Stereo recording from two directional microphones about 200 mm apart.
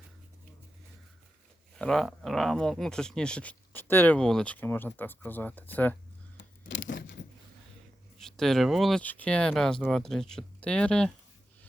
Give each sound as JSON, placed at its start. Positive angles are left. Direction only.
{"t": 1.7, "sound": "speech", "side_deg": 0}
{"t": 6.3, "sound": "a sound", "side_deg": 70}
{"t": 8.2, "sound": "speech", "side_deg": 0}